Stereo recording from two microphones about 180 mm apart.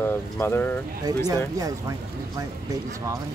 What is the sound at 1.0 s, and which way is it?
Speech, 20° right (ahead or behind).